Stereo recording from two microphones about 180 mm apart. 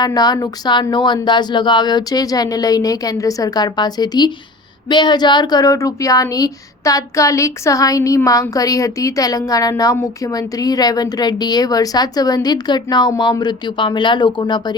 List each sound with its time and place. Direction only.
0.0 s a woman's voice: 20° left (ahead or behind)